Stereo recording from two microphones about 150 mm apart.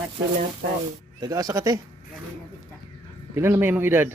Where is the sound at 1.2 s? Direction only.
25° right (ahead or behind).